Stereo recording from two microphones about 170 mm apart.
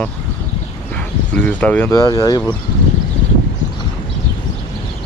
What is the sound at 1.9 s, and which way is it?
Speech, 20° left (ahead or behind).